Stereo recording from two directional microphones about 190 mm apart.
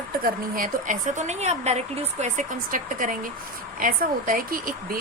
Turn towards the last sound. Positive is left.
turn(degrees=-50)  # may be behind; listen again after turning